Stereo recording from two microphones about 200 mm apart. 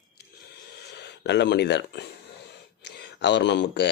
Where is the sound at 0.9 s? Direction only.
55° left (ahead or behind).